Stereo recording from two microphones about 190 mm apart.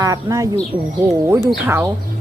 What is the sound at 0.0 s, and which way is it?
Speech, 15° right (ahead or behind).